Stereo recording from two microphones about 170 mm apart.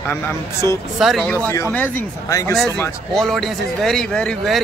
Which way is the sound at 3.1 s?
Centre (ahead or behind).